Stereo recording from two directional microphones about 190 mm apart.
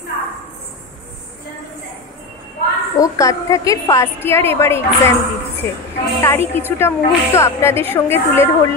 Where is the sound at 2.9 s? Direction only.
15° left (ahead or behind).